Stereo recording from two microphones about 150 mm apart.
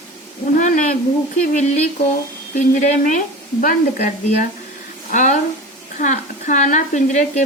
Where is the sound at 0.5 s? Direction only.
60° left (ahead or behind).